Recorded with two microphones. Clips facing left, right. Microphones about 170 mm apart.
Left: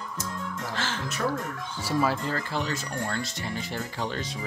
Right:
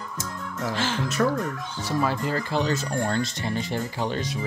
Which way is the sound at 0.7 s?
15° right (ahead or behind).